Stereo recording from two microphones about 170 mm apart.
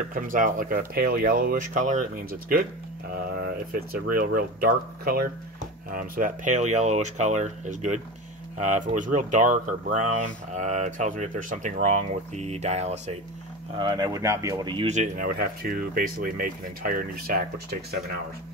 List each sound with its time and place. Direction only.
0.1 s speech: 50° right (ahead or behind)
3.9 s speech: 60° right (ahead or behind); by 13.1 s 40° right (ahead or behind)
13.7 s speech: 25° right (ahead or behind)
14.9 s speech: 50° right (ahead or behind)